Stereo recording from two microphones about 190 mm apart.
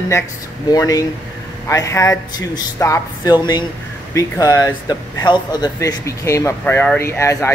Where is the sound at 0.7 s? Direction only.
20° left (ahead or behind).